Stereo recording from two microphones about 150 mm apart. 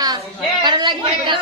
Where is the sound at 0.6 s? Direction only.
30° right (ahead or behind).